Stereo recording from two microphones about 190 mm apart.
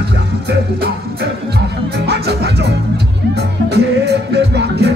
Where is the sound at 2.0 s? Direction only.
60° right (ahead or behind).